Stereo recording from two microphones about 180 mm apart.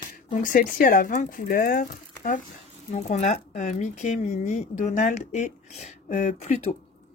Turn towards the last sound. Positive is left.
turn(degrees=40)  # may be behind; listen again after turning